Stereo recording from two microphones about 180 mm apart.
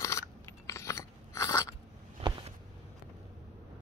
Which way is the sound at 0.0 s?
15° left (ahead or behind).